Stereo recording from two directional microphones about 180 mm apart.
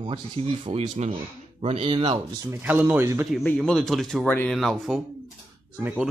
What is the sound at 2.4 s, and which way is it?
Speech, 10° right (ahead or behind).